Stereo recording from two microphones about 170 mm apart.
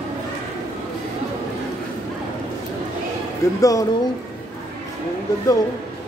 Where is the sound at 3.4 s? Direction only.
20° left (ahead or behind).